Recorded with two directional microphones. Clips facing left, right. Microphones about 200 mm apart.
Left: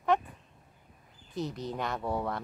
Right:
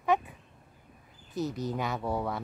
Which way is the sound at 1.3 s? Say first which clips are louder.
Right 3 dB; centre (ahead or behind).